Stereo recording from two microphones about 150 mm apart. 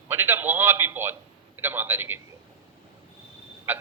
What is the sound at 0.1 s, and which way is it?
A man's voice, 15° right (ahead or behind).